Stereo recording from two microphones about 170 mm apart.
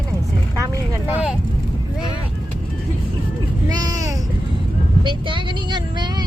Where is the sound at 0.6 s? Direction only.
10° right (ahead or behind).